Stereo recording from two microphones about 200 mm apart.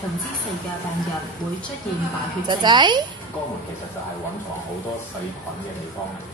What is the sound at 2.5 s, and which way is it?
Speech, 20° right (ahead or behind).